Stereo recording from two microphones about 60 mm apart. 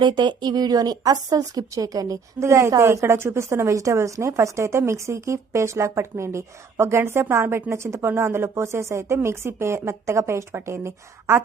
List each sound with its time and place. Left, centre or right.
0.5 s a woman's voice: right
2.4 s a woman's voice: right